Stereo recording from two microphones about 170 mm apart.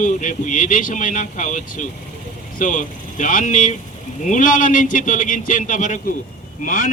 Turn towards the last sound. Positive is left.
turn(degrees=50)  # may be behind; listen again after turning